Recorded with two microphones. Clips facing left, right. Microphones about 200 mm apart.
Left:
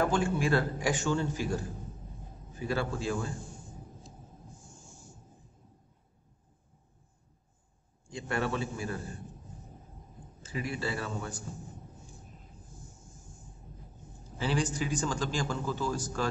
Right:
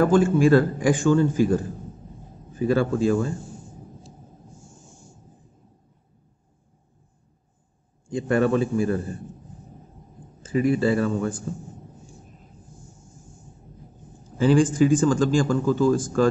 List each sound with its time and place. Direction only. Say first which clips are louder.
0.0 s a man's voice: right 11 dB; 50° right (ahead or behind)
2.7 s a man's voice: right 11 dB; 50° right (ahead or behind)
8.1 s a man's voice: right 12 dB; 50° right (ahead or behind)
10.4 s a man's voice: right 14 dB; 50° right (ahead or behind)
14.4 s a man's voice: right 13 dB; 50° right (ahead or behind)